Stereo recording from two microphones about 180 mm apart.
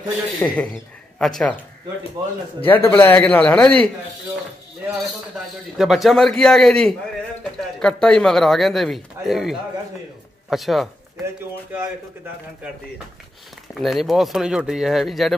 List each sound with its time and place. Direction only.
0.4 s a man's voice: 10° left (ahead or behind)
2.2 s speech: 20° right (ahead or behind)
2.6 s a man's voice: 10° left (ahead or behind)
5.8 s speech: centre (ahead or behind)
13.7 s speech: centre (ahead or behind)